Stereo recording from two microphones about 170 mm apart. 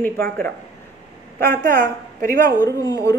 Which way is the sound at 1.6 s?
55° right (ahead or behind).